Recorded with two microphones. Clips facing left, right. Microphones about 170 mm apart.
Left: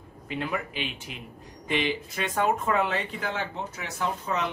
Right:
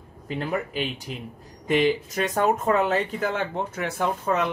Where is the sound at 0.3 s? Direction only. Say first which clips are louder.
Right 4 dB; 40° right (ahead or behind).